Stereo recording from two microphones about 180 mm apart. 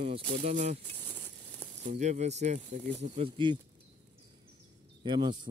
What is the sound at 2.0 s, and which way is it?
Speech, 40° right (ahead or behind).